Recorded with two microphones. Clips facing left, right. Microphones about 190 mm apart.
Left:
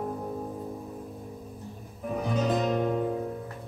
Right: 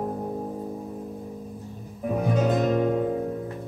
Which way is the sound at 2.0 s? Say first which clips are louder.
Right 5 dB; 55° right (ahead or behind).